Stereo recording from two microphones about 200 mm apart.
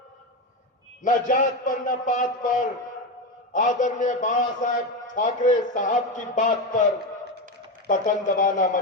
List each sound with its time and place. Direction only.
1.0 s a man's voice: 40° left (ahead or behind)
7.9 s a man's voice: 40° left (ahead or behind)